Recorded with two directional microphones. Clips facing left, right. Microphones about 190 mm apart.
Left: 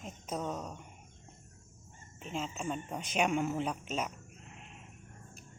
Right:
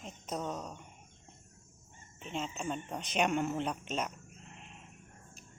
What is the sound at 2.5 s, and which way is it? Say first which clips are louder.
Speech: even; 5° left (ahead or behind).